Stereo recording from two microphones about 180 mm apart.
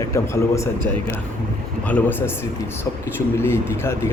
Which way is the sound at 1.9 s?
10° left (ahead or behind).